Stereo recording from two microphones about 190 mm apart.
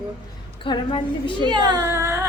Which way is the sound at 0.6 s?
25° left (ahead or behind).